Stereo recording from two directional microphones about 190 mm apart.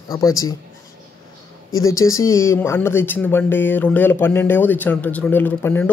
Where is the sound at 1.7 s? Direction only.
15° left (ahead or behind).